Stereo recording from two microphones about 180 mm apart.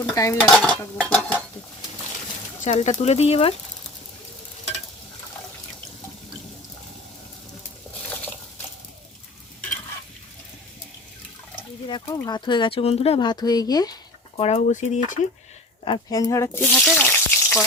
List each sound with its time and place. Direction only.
0.1 s dishes: 20° left (ahead or behind)
0.3 s dishes: 5° left (ahead or behind)
2.6 s speech: 40° left (ahead or behind)
11.9 s speech: 25° left (ahead or behind)
14.3 s speech: 35° left (ahead or behind)
15.8 s speech: 25° left (ahead or behind)
16.3 s a sound: 15° left (ahead or behind)